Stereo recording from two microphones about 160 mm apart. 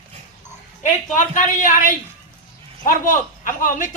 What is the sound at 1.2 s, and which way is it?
A man's voice, 55° left (ahead or behind).